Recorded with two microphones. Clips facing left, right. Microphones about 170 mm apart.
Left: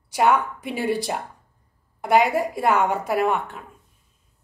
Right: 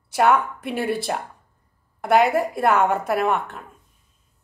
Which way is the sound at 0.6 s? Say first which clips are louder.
Right 2 dB; 60° right (ahead or behind).